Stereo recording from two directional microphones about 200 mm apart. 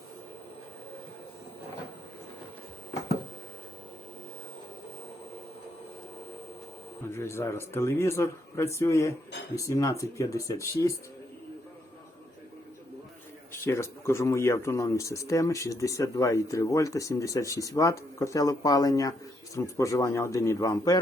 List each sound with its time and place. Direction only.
7.1 s speech: 10° left (ahead or behind)
13.5 s speech: 15° left (ahead or behind)